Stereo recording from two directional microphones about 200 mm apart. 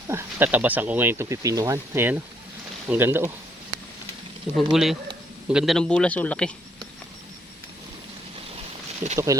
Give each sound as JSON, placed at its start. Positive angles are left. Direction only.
{"t": 0.1, "sound": "speech", "side_deg": -10}
{"t": 4.5, "sound": "a man's voice", "side_deg": 0}
{"t": 9.1, "sound": "speech", "side_deg": -15}